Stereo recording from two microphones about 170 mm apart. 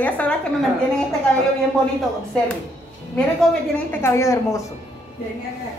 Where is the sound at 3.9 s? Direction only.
15° left (ahead or behind).